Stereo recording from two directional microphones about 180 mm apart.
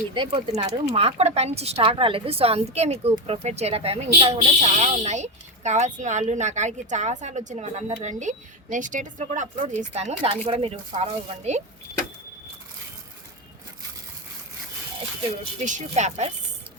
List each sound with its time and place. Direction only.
0.1 s a woman's voice: 25° right (ahead or behind); by 11.6 s 40° right (ahead or behind)
15.6 s a woman's voice: 40° right (ahead or behind)